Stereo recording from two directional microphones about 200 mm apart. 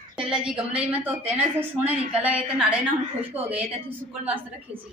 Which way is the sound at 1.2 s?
35° right (ahead or behind).